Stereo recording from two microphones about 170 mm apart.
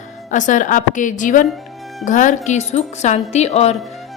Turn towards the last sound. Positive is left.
turn(degrees=40)  # may be behind; listen again after turning